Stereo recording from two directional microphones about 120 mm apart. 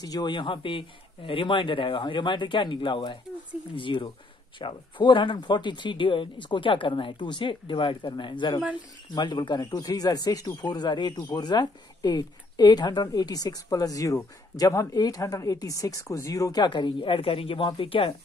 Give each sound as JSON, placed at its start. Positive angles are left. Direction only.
{"t": 0.0, "sound": "a man's voice", "side_deg": 35}